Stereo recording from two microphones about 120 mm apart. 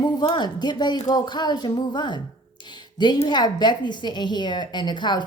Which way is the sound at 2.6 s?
40° left (ahead or behind).